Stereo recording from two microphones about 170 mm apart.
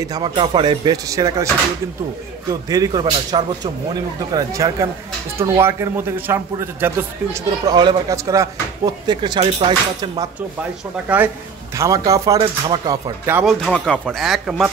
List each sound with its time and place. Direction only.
0.0 s a man's voice: 25° right (ahead or behind)
2.7 s a man's voice: 25° right (ahead or behind)
11.1 s speech: 5° right (ahead or behind)
11.7 s a man's voice: 20° right (ahead or behind)
13.4 s speech: centre (ahead or behind)